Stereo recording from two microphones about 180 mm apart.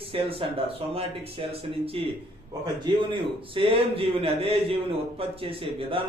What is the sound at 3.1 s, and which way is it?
Speech, 30° right (ahead or behind).